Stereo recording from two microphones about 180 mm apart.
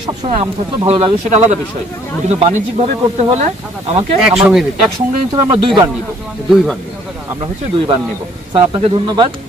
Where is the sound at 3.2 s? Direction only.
40° right (ahead or behind).